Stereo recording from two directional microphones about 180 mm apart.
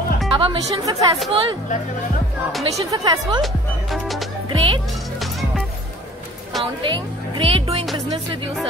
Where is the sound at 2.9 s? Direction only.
20° right (ahead or behind).